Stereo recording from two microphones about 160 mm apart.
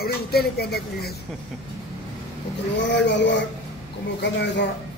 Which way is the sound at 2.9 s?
90° left.